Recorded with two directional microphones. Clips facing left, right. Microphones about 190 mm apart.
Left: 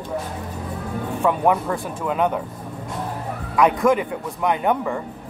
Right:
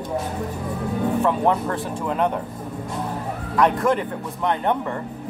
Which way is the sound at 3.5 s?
10° left (ahead or behind).